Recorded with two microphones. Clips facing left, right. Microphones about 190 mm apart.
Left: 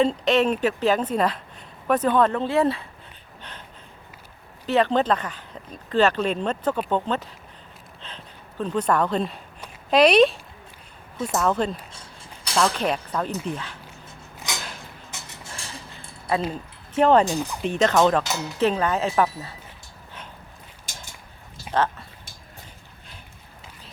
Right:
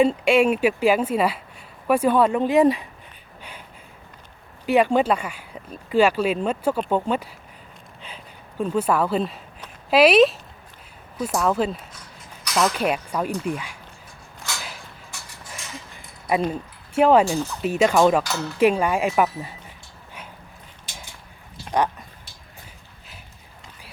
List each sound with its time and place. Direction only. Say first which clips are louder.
0.0 s speech: right 3 dB; 10° right (ahead or behind)
4.6 s speech: right 2 dB; 10° right (ahead or behind)
14.5 s a sound: left 1 dB; 15° left (ahead or behind)
15.5 s a sound: right 2 dB; 30° left (ahead or behind)
16.9 s speech: right 1 dB; 10° right (ahead or behind)
18.2 s speech: right 1 dB; 15° left (ahead or behind)
18.6 s speech: right 3 dB; 10° right (ahead or behind)
20.8 s a sound: right 1 dB; 45° left (ahead or behind)
21.7 s speech: right 1 dB; 15° right (ahead or behind)